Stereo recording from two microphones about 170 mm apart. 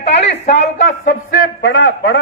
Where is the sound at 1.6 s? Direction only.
85° left.